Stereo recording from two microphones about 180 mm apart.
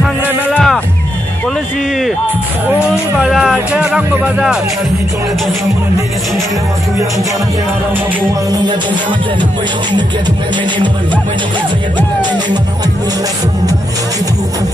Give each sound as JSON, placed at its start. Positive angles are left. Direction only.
{"t": 0.0, "sound": "music", "side_deg": 0}
{"t": 2.9, "sound": "speech", "side_deg": -5}
{"t": 12.2, "sound": "speech", "side_deg": -25}